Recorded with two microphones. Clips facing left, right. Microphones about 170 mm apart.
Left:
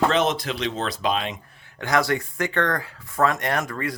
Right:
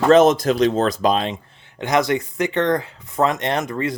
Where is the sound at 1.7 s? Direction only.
20° right (ahead or behind).